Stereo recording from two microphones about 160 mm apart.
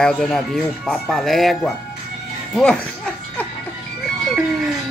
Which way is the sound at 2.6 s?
5° left (ahead or behind).